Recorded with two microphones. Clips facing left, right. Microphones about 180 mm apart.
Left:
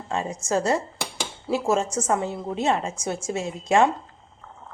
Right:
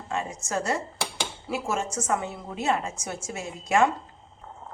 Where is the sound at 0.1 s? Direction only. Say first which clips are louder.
Left 5 dB; 30° left (ahead or behind).